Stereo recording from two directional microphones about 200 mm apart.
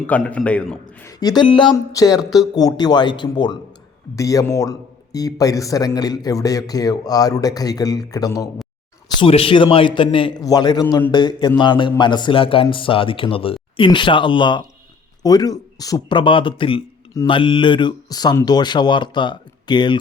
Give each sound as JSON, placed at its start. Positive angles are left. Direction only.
{"t": 0.1, "sound": "a man's voice", "side_deg": 5}
{"t": 1.2, "sound": "a man's voice", "side_deg": 20}